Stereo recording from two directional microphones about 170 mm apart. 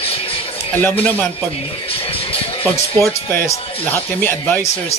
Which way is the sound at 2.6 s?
15° left (ahead or behind).